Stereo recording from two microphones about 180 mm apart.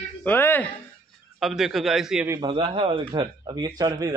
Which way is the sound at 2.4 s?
30° right (ahead or behind).